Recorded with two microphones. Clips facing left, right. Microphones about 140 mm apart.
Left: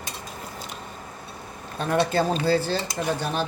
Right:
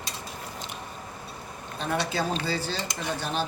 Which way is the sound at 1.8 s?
55° left (ahead or behind).